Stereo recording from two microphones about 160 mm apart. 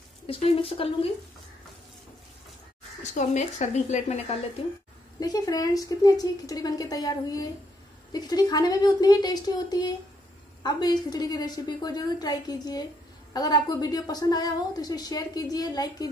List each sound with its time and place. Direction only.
0.3 s speech: 35° left (ahead or behind)
3.0 s speech: 50° left (ahead or behind)
5.2 s a woman's voice: 25° left (ahead or behind)